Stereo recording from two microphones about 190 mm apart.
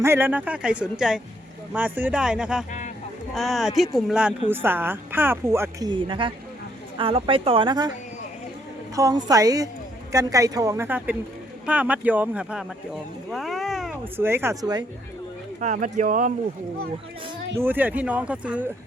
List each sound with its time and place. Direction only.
0.0 s a woman's voice: 10° right (ahead or behind)
5.9 s a woman's voice: 25° right (ahead or behind)
9.0 s a woman's voice: 20° right (ahead or behind); by 13.9 s centre (ahead or behind)
14.2 s a woman's voice: 10° right (ahead or behind)
15.6 s speech: 40° right (ahead or behind)
17.5 s a woman's voice: 10° right (ahead or behind)